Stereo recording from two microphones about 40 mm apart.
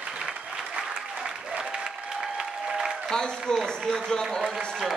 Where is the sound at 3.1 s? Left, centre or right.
Centre.